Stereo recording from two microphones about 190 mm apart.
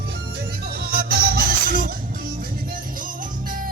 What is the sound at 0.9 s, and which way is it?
Music, 50° right (ahead or behind).